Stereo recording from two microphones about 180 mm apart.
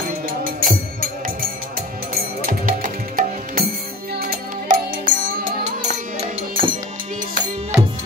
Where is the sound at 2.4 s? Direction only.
50° right (ahead or behind).